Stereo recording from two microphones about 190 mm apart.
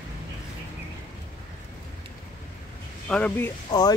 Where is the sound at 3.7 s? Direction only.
20° left (ahead or behind).